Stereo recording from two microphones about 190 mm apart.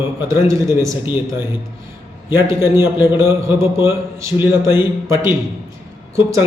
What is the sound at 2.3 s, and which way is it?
A man's voice, 15° right (ahead or behind).